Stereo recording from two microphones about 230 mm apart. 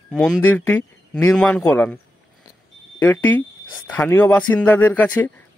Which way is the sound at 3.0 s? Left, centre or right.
Centre.